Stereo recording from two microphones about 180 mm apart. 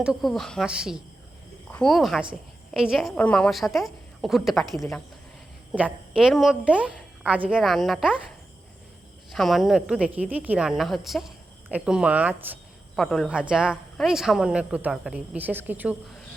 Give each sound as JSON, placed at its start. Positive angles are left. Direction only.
{"t": 0.0, "sound": "speech", "side_deg": 0}
{"t": 9.3, "sound": "speech", "side_deg": 0}
{"t": 13.0, "sound": "speech", "side_deg": 0}